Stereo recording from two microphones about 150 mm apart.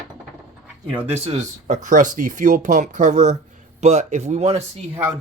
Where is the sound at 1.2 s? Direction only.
50° right (ahead or behind).